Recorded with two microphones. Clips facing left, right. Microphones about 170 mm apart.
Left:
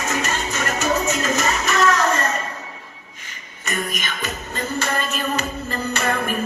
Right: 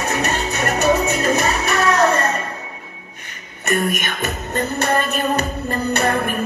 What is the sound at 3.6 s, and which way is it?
Music, 60° right (ahead or behind).